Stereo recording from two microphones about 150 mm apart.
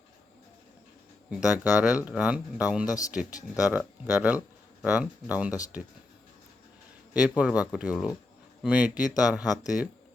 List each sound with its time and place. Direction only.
1.3 s speech: 10° right (ahead or behind)
2.8 s speech: 25° left (ahead or behind)
3.1 s speech: 10° right (ahead or behind)
7.1 s speech: 10° right (ahead or behind)